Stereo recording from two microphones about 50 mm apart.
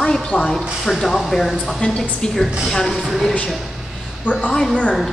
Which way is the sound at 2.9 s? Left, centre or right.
Centre.